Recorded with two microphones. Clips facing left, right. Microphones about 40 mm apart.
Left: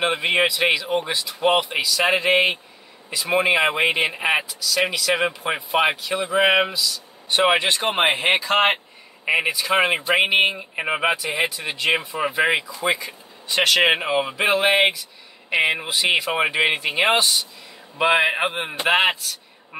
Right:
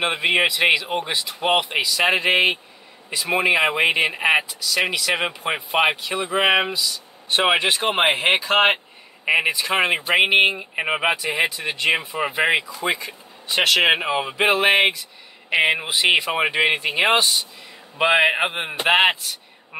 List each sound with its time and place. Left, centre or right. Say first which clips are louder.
0.0 s speech: even; centre
10.0 s speech: right 1 dB; centre
12.7 s speech: left 1 dB; centre
15.6 s speech: right 2 dB; centre
16.3 s speech: even; centre